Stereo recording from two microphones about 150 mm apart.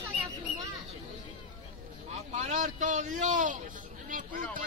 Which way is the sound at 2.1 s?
50° right (ahead or behind).